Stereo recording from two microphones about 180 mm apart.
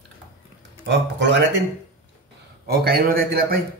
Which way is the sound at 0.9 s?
75° right (ahead or behind).